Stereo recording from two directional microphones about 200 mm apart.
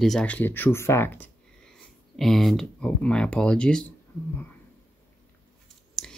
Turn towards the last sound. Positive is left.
turn(degrees=5)  # may be behind; listen again after turning